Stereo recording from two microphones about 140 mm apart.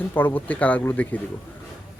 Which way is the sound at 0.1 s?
15° left (ahead or behind).